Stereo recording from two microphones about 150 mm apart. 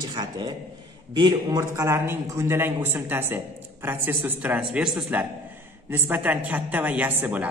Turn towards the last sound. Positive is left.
turn(degrees=-10)  # may be behind; listen again after turning